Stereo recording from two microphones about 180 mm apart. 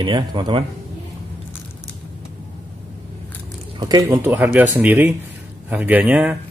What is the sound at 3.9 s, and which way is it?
Speech, 15° right (ahead or behind).